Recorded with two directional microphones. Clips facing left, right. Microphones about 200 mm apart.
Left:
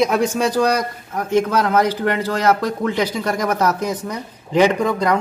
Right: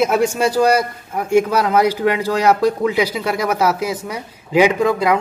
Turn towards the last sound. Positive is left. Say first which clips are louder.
# right 2 dB
turn(degrees=-5)  # may be behind; listen again after turning